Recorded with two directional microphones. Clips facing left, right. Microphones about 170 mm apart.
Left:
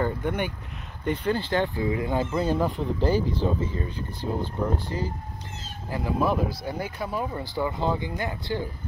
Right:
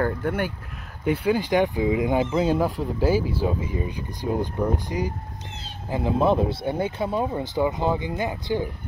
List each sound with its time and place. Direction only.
0.0 s speech: 5° right (ahead or behind)